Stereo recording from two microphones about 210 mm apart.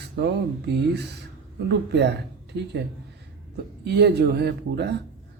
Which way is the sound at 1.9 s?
55° right (ahead or behind).